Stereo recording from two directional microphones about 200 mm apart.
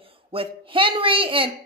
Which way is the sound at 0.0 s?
25° right (ahead or behind).